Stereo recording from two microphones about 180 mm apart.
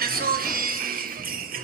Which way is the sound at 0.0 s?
55° right (ahead or behind).